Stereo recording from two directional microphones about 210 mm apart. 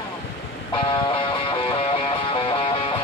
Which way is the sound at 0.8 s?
20° left (ahead or behind).